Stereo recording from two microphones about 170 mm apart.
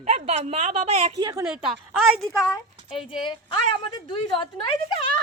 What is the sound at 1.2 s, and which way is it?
Speech, 20° right (ahead or behind).